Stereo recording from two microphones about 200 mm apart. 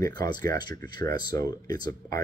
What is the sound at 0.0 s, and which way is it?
Speech, 20° left (ahead or behind).